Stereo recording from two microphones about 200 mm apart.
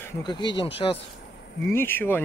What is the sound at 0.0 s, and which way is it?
Speech, 15° left (ahead or behind).